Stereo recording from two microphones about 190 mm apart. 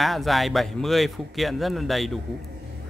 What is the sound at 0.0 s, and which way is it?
A man's voice, centre (ahead or behind).